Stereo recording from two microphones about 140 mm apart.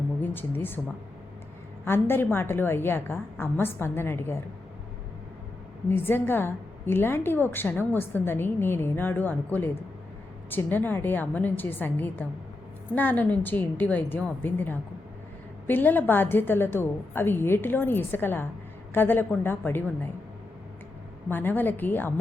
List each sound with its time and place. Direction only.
0.2 s speech: 15° left (ahead or behind)
1.8 s a woman's voice: 15° left (ahead or behind)
5.9 s a woman's voice: 15° left (ahead or behind)
21.2 s a woman's voice: 15° left (ahead or behind)